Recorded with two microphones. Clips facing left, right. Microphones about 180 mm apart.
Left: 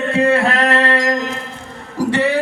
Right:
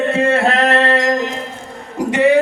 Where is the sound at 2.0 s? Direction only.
20° right (ahead or behind).